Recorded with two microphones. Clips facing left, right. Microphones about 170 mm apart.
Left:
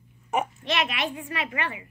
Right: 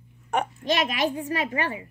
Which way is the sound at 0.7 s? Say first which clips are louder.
Right 4 dB; 40° right (ahead or behind).